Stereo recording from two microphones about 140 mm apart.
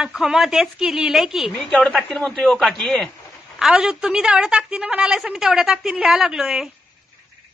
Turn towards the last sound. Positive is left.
turn(degrees=-5)  # may be behind; listen again after turning